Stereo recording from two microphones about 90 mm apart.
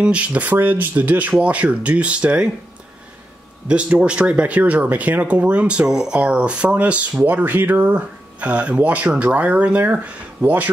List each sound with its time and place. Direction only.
0.0 s speech: 15° right (ahead or behind)
3.6 s speech: 10° right (ahead or behind)